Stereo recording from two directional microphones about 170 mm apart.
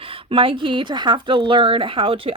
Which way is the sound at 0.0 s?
35° right (ahead or behind).